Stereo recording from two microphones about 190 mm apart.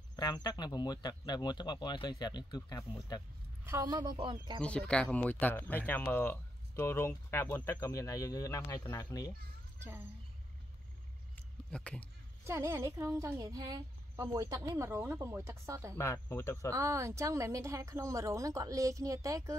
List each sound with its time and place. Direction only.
0.1 s speech: 20° left (ahead or behind)
3.6 s speech: 15° right (ahead or behind)
4.6 s speech: 5° left (ahead or behind)
11.3 s a sound: 5° left (ahead or behind)
12.4 s a woman's voice: 15° right (ahead or behind)
16.0 s speech: 15° left (ahead or behind)
16.7 s a woman's voice: 15° right (ahead or behind)